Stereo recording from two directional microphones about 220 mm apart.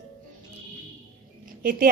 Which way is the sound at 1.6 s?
40° right (ahead or behind).